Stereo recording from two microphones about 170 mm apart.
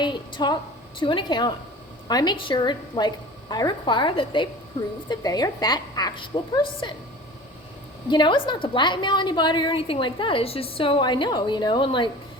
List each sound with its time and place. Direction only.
0.0 s a woman's voice: 25° left (ahead or behind)
8.1 s a woman's voice: 25° left (ahead or behind)